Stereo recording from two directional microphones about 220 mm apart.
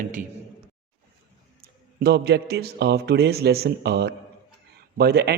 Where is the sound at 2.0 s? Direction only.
45° right (ahead or behind).